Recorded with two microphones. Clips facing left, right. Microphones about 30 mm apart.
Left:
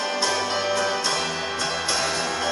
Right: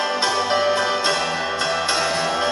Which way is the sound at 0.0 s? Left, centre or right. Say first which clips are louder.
Right 3 dB; right.